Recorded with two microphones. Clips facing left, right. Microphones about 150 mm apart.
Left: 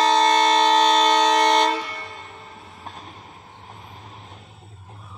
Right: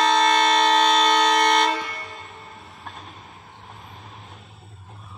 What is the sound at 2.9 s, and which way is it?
Vehicle, centre (ahead or behind).